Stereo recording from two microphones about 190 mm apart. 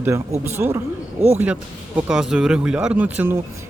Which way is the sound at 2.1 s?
5° right (ahead or behind).